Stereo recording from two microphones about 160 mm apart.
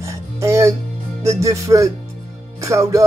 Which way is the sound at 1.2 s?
20° right (ahead or behind).